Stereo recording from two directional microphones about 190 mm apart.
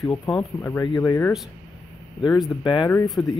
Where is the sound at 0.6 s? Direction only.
10° left (ahead or behind).